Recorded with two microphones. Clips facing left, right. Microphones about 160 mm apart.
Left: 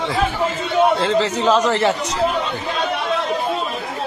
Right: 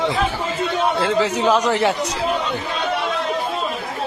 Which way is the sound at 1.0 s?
10° right (ahead or behind).